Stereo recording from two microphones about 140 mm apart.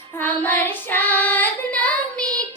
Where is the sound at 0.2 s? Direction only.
15° left (ahead or behind).